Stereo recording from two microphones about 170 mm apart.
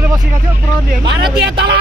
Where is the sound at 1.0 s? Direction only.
90° right.